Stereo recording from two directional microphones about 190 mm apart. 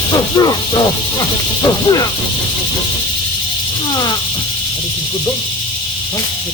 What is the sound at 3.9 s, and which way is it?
Speech, 20° left (ahead or behind).